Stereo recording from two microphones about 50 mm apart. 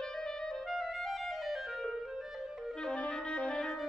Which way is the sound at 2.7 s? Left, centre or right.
Centre.